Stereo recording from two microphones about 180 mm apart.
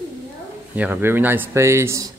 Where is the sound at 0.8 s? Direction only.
10° right (ahead or behind).